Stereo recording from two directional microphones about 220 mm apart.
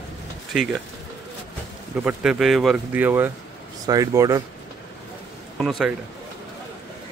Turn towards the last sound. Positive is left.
turn(degrees=0)  # may be behind; listen again after turning